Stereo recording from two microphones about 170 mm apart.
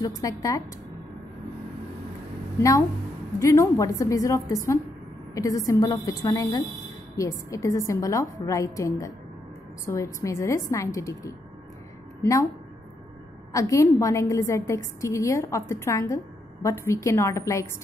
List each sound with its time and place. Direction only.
0.2 s a woman's voice: 20° left (ahead or behind)
3.3 s a woman's voice: 15° left (ahead or behind)
13.5 s a woman's voice: 20° left (ahead or behind)